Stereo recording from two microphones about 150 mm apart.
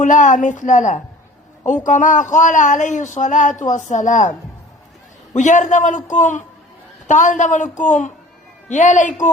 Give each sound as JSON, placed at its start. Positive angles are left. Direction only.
{"t": 0.0, "sound": "speech", "side_deg": 55}